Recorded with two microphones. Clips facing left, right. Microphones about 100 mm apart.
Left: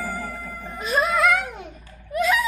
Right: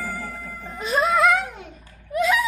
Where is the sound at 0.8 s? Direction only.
25° right (ahead or behind).